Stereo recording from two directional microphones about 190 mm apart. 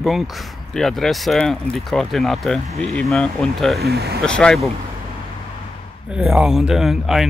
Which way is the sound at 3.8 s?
55° right (ahead or behind).